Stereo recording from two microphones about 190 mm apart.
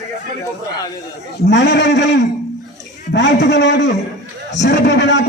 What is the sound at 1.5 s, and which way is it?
Speech, 65° left (ahead or behind).